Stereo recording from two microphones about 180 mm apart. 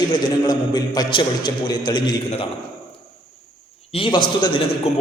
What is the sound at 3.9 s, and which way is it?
Speech, 30° left (ahead or behind).